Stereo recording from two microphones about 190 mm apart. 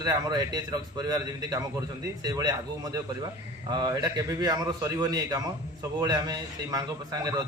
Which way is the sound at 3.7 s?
20° right (ahead or behind).